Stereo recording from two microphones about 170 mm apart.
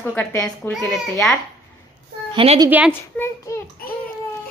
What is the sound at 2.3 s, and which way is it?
Speech, 35° right (ahead or behind).